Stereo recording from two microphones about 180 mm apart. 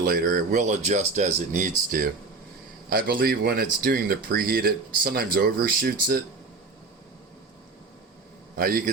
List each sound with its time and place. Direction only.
0.0 s speech: 55° right (ahead or behind)
8.5 s a man's voice: 55° right (ahead or behind)